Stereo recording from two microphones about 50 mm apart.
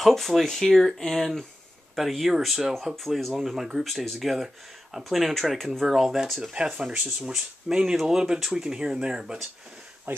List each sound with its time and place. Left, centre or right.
0.0 s speech: centre
3.8 s speech: centre
6.8 s speech: right; by 8.6 s centre
8.6 s speech: centre
10.1 s speech: right